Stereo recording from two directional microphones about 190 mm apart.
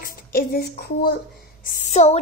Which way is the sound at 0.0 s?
50° left (ahead or behind).